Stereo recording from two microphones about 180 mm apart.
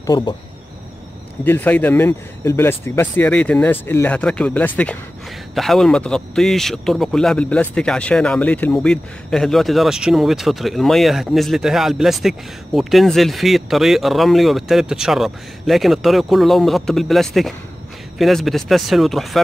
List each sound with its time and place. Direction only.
0.0 s speech: 20° left (ahead or behind)
1.4 s speech: 10° left (ahead or behind)